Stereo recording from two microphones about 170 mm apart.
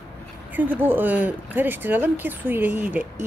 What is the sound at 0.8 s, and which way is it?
A woman's voice, 10° right (ahead or behind).